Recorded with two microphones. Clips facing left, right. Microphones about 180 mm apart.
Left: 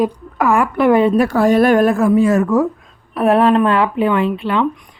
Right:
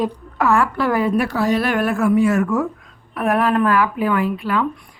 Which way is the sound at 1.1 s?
45° left (ahead or behind).